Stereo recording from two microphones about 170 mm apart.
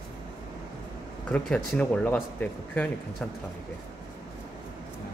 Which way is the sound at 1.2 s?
5° left (ahead or behind).